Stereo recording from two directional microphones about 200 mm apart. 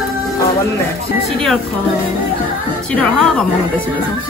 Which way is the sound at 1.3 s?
Centre (ahead or behind).